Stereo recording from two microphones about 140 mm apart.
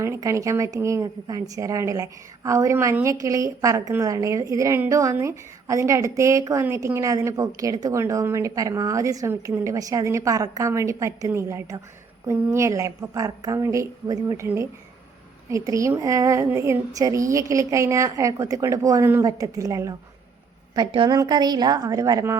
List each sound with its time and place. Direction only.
0.0 s a woman's voice: 20° right (ahead or behind)
20.7 s a woman's voice: 35° right (ahead or behind)